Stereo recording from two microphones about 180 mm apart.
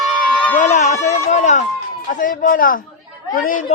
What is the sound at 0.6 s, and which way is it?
A woman's voice, 40° left (ahead or behind).